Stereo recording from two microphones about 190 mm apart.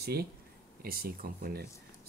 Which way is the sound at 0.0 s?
55° right (ahead or behind).